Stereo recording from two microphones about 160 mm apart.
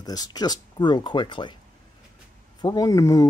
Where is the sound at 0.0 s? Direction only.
25° left (ahead or behind).